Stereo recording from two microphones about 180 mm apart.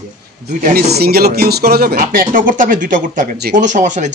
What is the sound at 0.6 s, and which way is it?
Speech, 45° right (ahead or behind).